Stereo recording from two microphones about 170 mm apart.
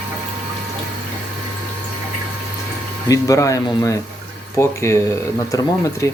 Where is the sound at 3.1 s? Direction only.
20° left (ahead or behind).